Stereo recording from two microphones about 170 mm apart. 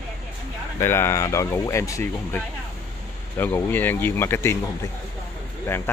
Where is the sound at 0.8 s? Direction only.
15° left (ahead or behind).